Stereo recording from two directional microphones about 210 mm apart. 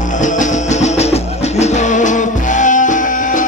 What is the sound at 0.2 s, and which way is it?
Music, 35° left (ahead or behind).